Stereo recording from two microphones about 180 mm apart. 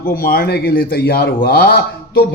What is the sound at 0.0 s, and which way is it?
A man's voice, 55° left (ahead or behind).